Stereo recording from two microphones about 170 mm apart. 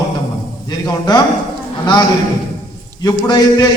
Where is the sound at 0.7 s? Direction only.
25° left (ahead or behind).